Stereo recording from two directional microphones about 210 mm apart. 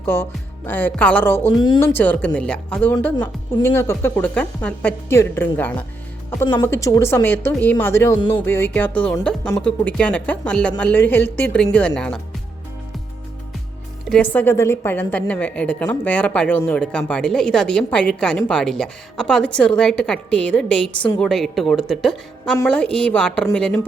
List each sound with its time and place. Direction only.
0.0 s speech: 10° left (ahead or behind)
1.6 s speech: 20° left (ahead or behind)
1.9 s a woman's voice: 10° left (ahead or behind)
14.1 s a woman's voice: 5° left (ahead or behind)